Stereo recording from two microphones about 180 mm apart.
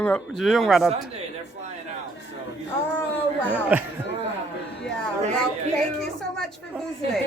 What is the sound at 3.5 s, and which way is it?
Speech, 10° right (ahead or behind).